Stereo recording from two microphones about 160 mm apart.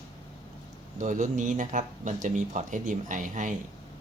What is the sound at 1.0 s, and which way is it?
Speech, 50° right (ahead or behind).